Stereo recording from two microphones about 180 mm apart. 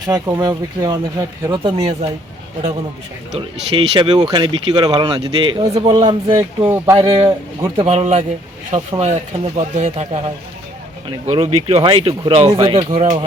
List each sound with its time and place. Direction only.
0.1 s speech: 20° right (ahead or behind); by 2.0 s 35° right (ahead or behind)
3.3 s speech: 30° right (ahead or behind)
6.6 s speech: 10° right (ahead or behind)
6.9 s speech: 30° right (ahead or behind)
7.9 s speech: 40° right (ahead or behind)
11.3 s speech: 30° right (ahead or behind)
12.9 s speech: 40° right (ahead or behind)